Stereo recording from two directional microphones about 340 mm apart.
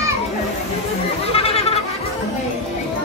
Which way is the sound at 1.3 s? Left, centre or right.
Centre.